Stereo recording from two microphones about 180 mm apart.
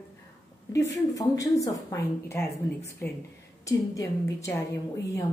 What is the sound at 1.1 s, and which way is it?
A woman's voice, 20° left (ahead or behind).